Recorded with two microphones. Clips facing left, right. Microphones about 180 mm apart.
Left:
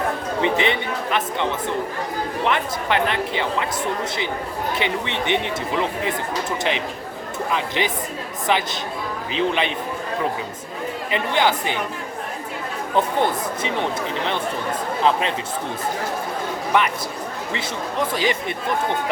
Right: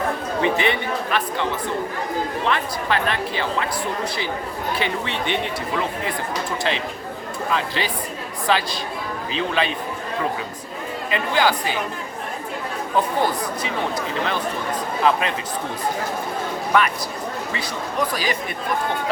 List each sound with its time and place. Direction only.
0.4 s speech: 20° left (ahead or behind)
2.5 s speech: 20° left (ahead or behind)
4.8 s speech: 20° left (ahead or behind)
6.7 s speech: 15° left (ahead or behind)
11.1 s speech: 20° left (ahead or behind)
15.1 s speech: 25° left (ahead or behind)
16.7 s speech: 20° left (ahead or behind)
18.0 s speech: 25° left (ahead or behind)